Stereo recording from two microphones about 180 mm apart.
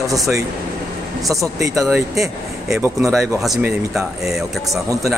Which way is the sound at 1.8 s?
Centre (ahead or behind).